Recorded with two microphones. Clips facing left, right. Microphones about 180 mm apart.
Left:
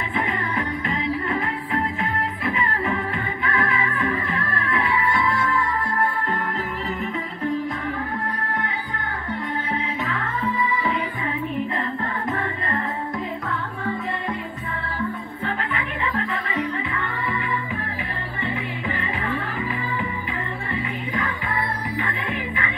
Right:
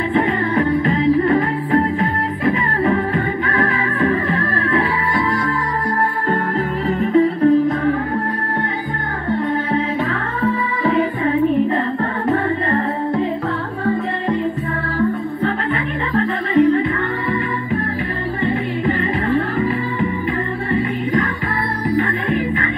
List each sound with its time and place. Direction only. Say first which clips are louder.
0.1 s music: right 8 dB; 35° right (ahead or behind)
6.9 s music: right 14 dB; 35° right (ahead or behind)
10.4 s music: right 6 dB; 40° right (ahead or behind)
15.4 s music: right 6 dB; 40° right (ahead or behind)
18.4 s music: right 9 dB; 40° right (ahead or behind)